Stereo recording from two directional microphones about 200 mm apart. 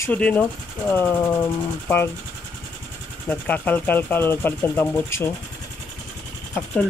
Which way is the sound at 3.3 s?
5° left (ahead or behind).